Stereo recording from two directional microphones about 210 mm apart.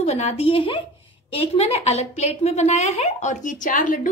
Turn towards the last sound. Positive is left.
turn(degrees=40)  # may be behind; listen again after turning